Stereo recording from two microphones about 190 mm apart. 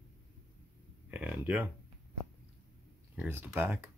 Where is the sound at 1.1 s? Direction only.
10° right (ahead or behind).